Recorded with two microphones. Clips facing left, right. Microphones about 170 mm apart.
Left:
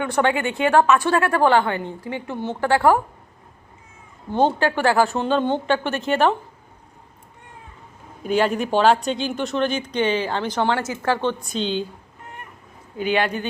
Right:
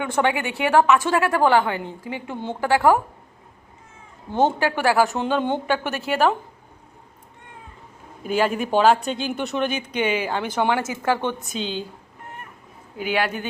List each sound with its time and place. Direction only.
0.0 s a woman's voice: 15° right (ahead or behind)
4.4 s a woman's voice: 15° right (ahead or behind)
8.2 s a woman's voice: 5° right (ahead or behind)
13.0 s a woman's voice: 10° right (ahead or behind)